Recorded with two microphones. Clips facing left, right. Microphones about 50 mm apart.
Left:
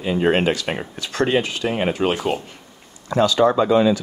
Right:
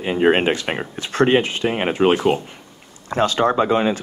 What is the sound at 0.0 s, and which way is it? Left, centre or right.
Speech, right.